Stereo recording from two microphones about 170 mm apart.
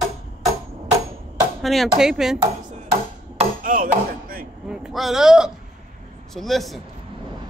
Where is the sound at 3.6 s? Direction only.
55° right (ahead or behind).